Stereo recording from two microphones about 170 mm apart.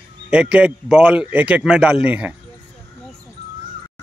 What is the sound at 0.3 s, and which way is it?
A man's voice, 5° right (ahead or behind).